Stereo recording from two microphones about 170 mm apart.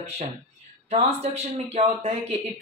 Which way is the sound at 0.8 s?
40° right (ahead or behind).